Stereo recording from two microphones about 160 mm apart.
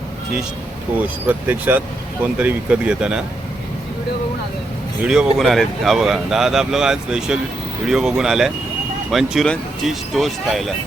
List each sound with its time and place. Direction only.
1.0 s speech: 10° right (ahead or behind)
5.0 s speech: centre (ahead or behind)